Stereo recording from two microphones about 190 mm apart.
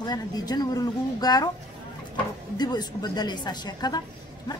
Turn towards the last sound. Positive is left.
turn(degrees=20)  # may be behind; listen again after turning